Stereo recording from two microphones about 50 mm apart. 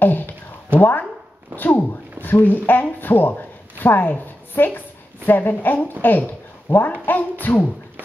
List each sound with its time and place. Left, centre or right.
0.0 s a sound: left
0.7 s a woman's voice: left
2.2 s a woman's voice: left